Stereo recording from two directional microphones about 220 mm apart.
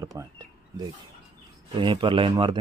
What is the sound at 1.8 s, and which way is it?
Speech, 20° right (ahead or behind).